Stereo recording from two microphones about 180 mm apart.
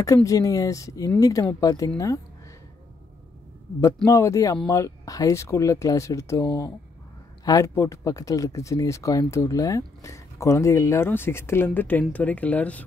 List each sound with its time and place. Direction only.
0.0 s speech: 20° left (ahead or behind)
3.8 s speech: 15° left (ahead or behind)